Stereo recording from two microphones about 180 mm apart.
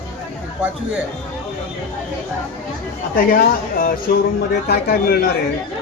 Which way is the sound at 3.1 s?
55° left (ahead or behind).